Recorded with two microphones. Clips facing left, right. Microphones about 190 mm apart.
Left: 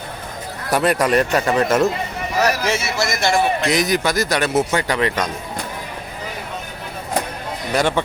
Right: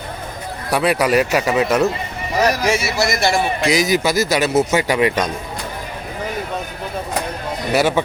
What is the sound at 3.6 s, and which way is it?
A man's voice, centre (ahead or behind).